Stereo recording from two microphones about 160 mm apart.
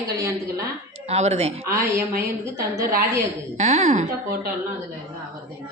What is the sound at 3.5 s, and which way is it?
Speech, 45° right (ahead or behind).